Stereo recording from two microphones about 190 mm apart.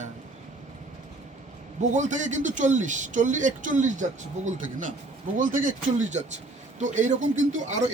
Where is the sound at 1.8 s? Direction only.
40° right (ahead or behind).